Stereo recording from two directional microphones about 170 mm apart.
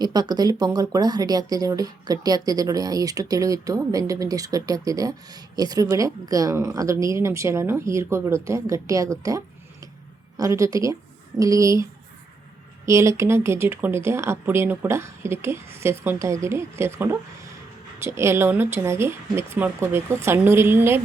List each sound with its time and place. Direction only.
0.0 s speech: 25° right (ahead or behind)